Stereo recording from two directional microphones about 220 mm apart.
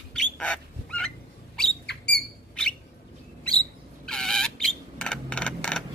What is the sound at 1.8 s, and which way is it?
Rodents, 50° left (ahead or behind).